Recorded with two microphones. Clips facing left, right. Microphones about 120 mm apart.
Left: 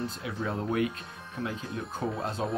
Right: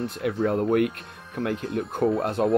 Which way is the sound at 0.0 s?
65° right (ahead or behind).